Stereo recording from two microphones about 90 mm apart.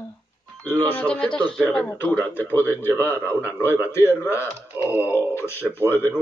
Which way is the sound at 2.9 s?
25° right (ahead or behind).